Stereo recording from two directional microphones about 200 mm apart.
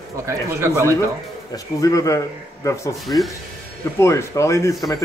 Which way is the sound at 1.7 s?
15° left (ahead or behind).